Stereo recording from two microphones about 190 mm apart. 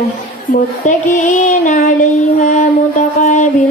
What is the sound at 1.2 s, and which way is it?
Female singing, 40° left (ahead or behind).